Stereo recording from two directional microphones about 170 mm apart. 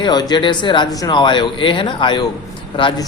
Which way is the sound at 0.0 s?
25° left (ahead or behind).